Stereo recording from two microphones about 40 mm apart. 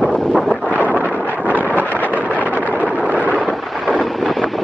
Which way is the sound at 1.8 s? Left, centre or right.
Left.